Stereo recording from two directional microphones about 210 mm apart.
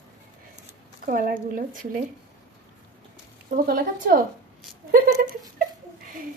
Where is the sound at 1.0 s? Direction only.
40° right (ahead or behind).